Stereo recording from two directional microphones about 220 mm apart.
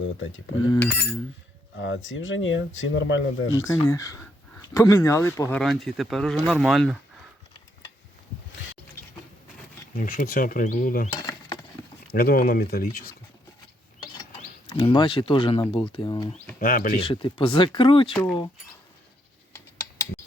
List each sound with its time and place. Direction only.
0.7 s a sound: 10° left (ahead or behind)
1.8 s speech: 60° left (ahead or behind)
3.7 s speech: 15° left (ahead or behind)
10.0 s speech: 40° left (ahead or behind)
12.1 s speech: 40° left (ahead or behind)
14.0 s a sound: 20° left (ahead or behind)
14.8 s speech: 20° left (ahead or behind)
16.6 s speech: 40° left (ahead or behind)
17.0 s speech: 25° left (ahead or behind)
18.1 s speech: centre (ahead or behind)